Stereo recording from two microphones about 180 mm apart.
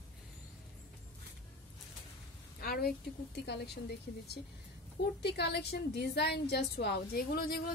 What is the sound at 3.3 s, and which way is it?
Speech, 70° left (ahead or behind).